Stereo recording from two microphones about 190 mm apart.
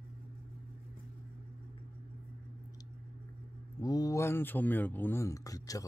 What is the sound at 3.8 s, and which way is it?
Speech, 20° left (ahead or behind).